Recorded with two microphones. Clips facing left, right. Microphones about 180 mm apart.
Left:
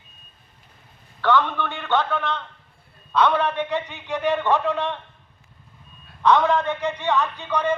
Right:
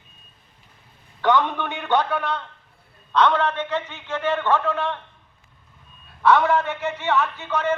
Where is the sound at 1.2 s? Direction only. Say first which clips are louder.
Right 1 dB; 15° right (ahead or behind).